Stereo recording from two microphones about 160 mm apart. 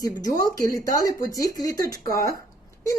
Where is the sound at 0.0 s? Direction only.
25° left (ahead or behind).